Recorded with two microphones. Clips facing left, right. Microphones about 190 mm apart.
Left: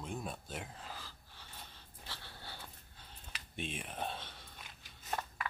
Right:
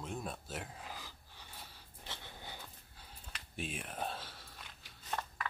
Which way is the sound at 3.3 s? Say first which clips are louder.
Even; 5° right (ahead or behind).